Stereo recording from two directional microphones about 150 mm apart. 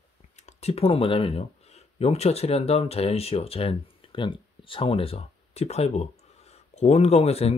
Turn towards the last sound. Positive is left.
turn(degrees=45)  # may be behind; listen again after turning